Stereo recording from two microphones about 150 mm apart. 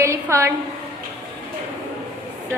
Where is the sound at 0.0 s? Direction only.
20° right (ahead or behind).